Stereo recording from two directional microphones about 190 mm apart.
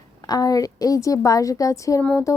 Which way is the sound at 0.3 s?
20° left (ahead or behind).